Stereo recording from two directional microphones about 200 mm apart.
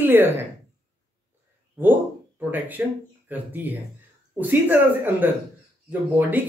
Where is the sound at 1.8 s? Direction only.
10° right (ahead or behind).